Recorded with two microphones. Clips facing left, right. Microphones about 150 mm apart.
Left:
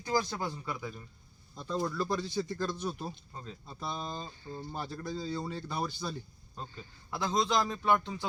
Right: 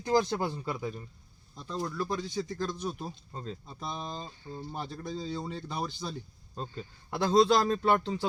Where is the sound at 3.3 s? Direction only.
30° right (ahead or behind).